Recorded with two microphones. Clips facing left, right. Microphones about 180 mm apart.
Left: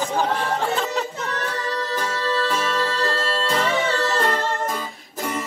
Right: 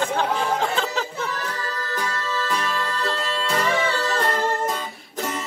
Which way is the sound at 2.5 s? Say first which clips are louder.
Left 3 dB; 5° left (ahead or behind).